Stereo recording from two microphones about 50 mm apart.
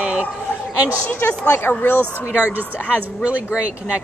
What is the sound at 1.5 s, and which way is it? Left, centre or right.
Speech, left.